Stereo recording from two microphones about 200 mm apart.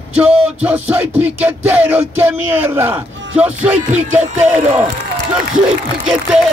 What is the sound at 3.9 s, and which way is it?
Music, 35° right (ahead or behind).